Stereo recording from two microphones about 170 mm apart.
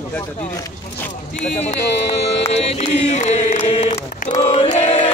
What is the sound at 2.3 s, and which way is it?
Speech, 35° left (ahead or behind).